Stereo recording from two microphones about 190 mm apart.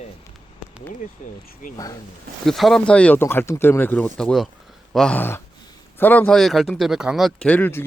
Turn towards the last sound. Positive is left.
turn(degrees=10)  # may be behind; listen again after turning